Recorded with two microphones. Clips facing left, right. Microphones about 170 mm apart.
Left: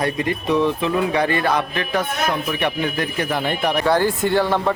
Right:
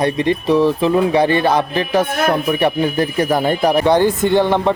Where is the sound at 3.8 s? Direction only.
20° right (ahead or behind).